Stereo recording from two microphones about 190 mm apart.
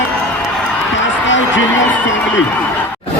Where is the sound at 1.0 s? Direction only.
75° left (ahead or behind).